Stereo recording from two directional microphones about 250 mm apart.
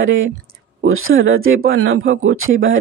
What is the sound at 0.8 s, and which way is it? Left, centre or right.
Speech, right.